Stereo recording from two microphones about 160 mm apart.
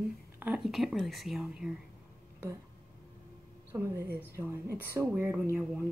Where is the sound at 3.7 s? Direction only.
15° right (ahead or behind).